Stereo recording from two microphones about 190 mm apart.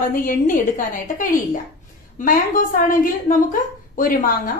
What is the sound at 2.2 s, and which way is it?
A woman's voice, 45° left (ahead or behind).